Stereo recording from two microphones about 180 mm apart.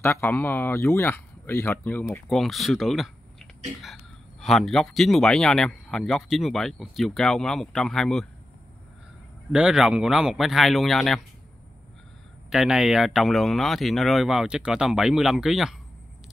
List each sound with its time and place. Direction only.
0.0 s speech: 15° left (ahead or behind)
9.5 s speech: 5° right (ahead or behind)
12.4 s speech: 5° right (ahead or behind)